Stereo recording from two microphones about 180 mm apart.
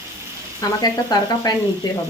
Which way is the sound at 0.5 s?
20° left (ahead or behind).